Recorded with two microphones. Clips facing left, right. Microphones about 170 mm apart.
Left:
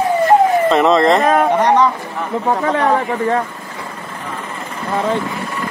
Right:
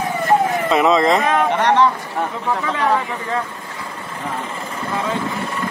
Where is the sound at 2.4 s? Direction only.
40° left (ahead or behind).